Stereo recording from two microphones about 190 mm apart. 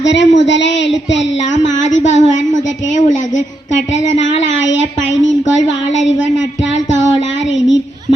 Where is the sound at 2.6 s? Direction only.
75° left (ahead or behind).